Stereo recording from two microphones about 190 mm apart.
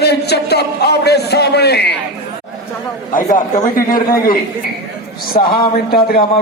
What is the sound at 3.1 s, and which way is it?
A man's voice, 45° left (ahead or behind).